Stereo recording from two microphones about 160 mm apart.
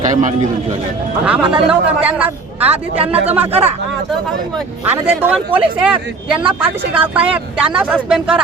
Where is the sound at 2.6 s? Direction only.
40° right (ahead or behind).